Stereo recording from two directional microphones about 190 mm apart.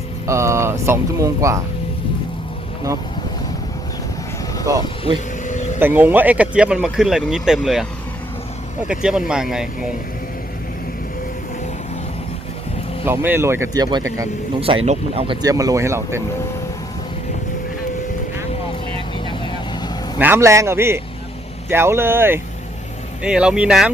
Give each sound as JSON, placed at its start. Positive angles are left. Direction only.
{"t": 0.3, "sound": "speech", "side_deg": -15}
{"t": 4.7, "sound": "speech", "side_deg": -15}
{"t": 5.5, "sound": "vehicle", "side_deg": 40}
{"t": 5.8, "sound": "speech", "side_deg": -10}
{"t": 8.9, "sound": "speech", "side_deg": -5}
{"t": 13.1, "sound": "speech", "side_deg": -10}
{"t": 14.8, "sound": "speech", "side_deg": -30}
{"t": 19.2, "sound": "vehicle", "side_deg": 25}
{"t": 20.1, "sound": "speech", "side_deg": -10}